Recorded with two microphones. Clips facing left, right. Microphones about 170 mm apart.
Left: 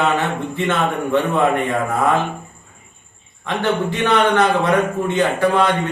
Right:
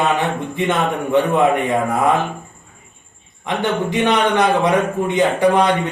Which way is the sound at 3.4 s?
15° right (ahead or behind).